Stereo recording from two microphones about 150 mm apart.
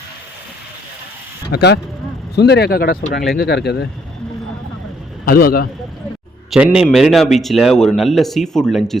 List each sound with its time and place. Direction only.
1.5 s speech: 90° left
5.2 s a man's voice: 80° left
6.5 s speech: 5° right (ahead or behind)